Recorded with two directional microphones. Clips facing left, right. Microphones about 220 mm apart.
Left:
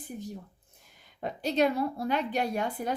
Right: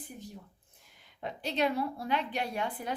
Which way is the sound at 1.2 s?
45° left (ahead or behind).